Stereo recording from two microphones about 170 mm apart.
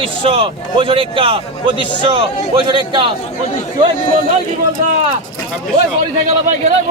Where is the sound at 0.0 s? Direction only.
30° right (ahead or behind).